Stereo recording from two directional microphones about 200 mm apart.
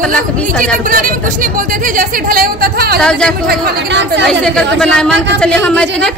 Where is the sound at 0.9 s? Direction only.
45° right (ahead or behind).